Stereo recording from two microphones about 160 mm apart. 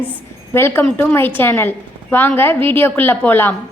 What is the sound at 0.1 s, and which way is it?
A woman's voice, 15° left (ahead or behind).